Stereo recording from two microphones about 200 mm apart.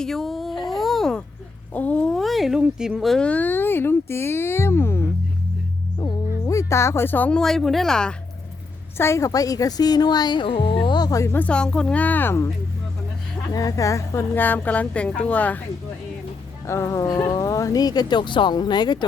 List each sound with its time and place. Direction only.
0.0 s a sound: centre (ahead or behind)
1.7 s speech: 5° left (ahead or behind)
9.0 s speech: 15° left (ahead or behind)
13.5 s speech: 15° left (ahead or behind)
16.6 s speech: 15° left (ahead or behind)